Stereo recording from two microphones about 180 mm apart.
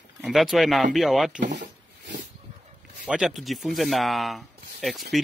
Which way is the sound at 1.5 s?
75° right (ahead or behind).